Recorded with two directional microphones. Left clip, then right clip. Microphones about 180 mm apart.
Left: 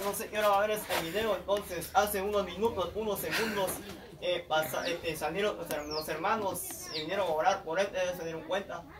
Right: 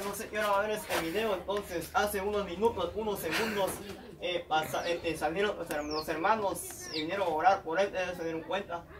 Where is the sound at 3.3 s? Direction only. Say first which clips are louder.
Even; 10° right (ahead or behind).